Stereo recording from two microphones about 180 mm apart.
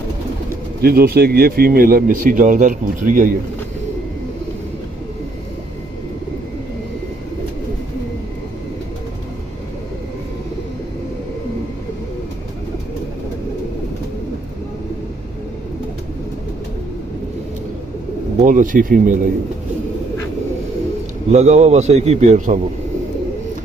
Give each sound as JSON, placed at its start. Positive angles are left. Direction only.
{"t": 0.7, "sound": "speech", "side_deg": -60}
{"t": 18.4, "sound": "speech", "side_deg": -45}
{"t": 21.3, "sound": "a man's voice", "side_deg": -40}